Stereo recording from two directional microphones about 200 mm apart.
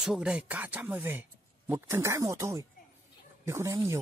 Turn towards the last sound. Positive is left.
turn(degrees=-15)  # may be behind; listen again after turning